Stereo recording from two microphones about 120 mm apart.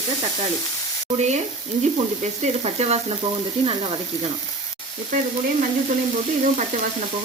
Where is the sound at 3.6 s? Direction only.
50° right (ahead or behind).